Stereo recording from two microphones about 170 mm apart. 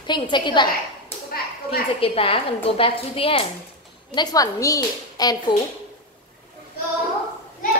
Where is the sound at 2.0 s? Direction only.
35° left (ahead or behind).